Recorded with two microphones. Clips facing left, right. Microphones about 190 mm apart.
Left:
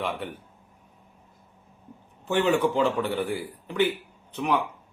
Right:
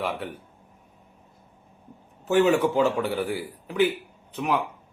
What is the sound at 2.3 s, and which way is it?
A man's voice, 5° right (ahead or behind).